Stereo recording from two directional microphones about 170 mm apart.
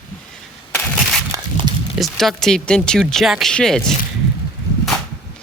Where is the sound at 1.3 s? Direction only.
25° right (ahead or behind).